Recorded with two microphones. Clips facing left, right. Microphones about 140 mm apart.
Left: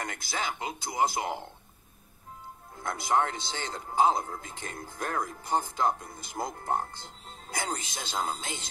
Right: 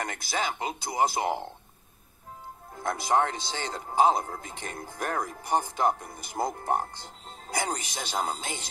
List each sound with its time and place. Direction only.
0.3 s speech: 20° right (ahead or behind)
2.8 s speech: 20° right (ahead or behind)